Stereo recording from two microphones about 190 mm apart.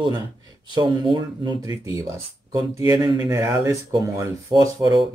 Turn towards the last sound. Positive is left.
turn(degrees=-20)  # may be behind; listen again after turning